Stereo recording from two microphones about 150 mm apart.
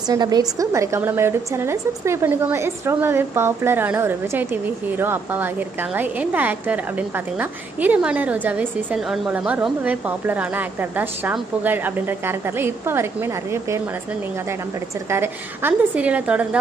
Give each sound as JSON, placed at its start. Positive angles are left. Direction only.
{"t": 0.1, "sound": "a woman's voice", "side_deg": -25}
{"t": 15.0, "sound": "a woman's voice", "side_deg": -15}